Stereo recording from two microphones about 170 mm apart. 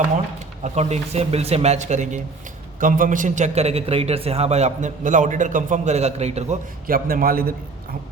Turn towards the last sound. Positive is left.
turn(degrees=-60)  # may be behind; listen again after turning